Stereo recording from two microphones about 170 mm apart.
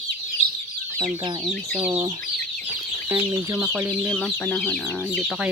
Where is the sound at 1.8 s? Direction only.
35° right (ahead or behind).